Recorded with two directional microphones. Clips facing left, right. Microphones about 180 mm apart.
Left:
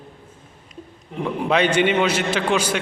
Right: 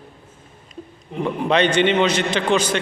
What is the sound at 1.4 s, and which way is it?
A man's voice, 10° left (ahead or behind).